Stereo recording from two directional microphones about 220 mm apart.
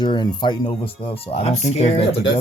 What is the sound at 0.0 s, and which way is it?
Speech, 20° left (ahead or behind).